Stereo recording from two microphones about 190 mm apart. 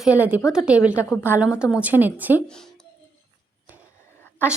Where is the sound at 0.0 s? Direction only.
5° right (ahead or behind).